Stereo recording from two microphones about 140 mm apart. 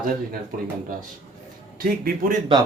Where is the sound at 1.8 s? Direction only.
90° right.